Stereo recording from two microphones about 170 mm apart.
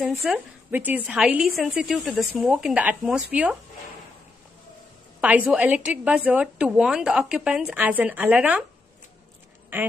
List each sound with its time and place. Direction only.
0.0 s a woman's voice: centre (ahead or behind)
5.2 s a woman's voice: 10° right (ahead or behind)
9.7 s a woman's voice: 10° right (ahead or behind)